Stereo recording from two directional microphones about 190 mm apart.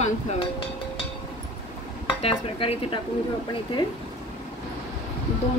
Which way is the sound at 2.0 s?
25° left (ahead or behind).